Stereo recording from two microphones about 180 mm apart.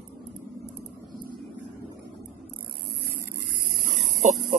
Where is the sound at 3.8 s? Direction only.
45° right (ahead or behind).